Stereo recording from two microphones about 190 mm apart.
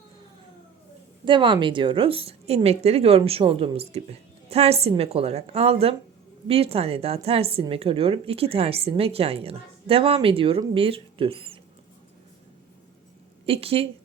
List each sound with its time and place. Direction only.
1.2 s a woman's voice: 25° right (ahead or behind)
13.4 s speech: 30° right (ahead or behind)